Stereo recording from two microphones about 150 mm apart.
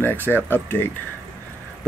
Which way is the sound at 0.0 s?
15° left (ahead or behind).